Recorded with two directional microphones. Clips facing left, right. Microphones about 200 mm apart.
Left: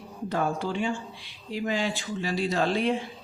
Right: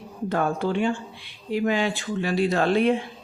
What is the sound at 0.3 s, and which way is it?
Speech, 55° right (ahead or behind).